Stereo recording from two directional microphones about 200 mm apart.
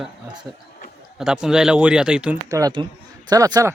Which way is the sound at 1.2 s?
5° right (ahead or behind).